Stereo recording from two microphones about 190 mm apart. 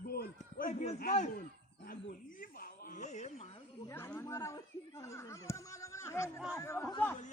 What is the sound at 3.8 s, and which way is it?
Speech, 15° left (ahead or behind).